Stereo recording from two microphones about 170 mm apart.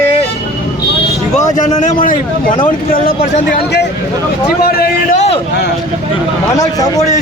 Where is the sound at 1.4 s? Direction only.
45° left (ahead or behind); by 4.9 s 65° left (ahead or behind).